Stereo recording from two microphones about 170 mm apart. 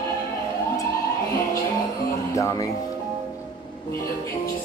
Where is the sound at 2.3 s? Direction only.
20° left (ahead or behind).